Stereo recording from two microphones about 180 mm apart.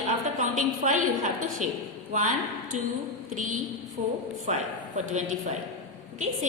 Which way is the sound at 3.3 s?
45° right (ahead or behind).